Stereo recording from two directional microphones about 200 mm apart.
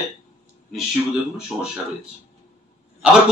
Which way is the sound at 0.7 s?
5° right (ahead or behind).